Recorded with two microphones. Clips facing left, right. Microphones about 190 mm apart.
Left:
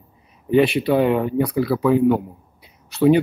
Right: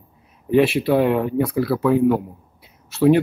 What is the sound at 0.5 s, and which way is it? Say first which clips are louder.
Speech: even; centre (ahead or behind).